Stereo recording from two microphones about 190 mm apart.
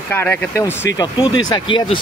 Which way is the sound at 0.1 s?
10° left (ahead or behind).